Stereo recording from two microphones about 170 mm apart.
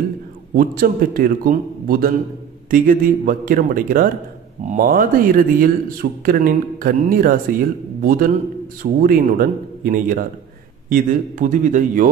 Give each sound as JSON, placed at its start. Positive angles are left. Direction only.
{"t": 0.6, "sound": "a man's voice", "side_deg": -55}